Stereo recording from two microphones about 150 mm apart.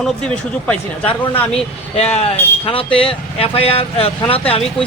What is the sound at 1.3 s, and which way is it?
Speech, 40° left (ahead or behind).